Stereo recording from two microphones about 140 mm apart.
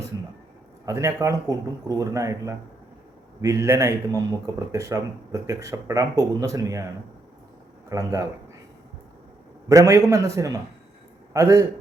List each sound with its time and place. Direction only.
0.9 s speech: 20° right (ahead or behind)
7.9 s speech: 25° right (ahead or behind)
9.6 s speech: 25° right (ahead or behind)